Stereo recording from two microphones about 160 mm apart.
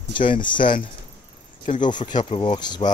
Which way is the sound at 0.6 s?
55° left (ahead or behind).